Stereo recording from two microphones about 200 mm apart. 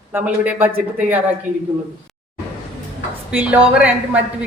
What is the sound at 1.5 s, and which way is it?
Speech, 40° right (ahead or behind).